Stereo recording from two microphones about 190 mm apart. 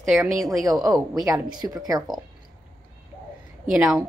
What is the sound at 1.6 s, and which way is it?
Speech, 15° right (ahead or behind).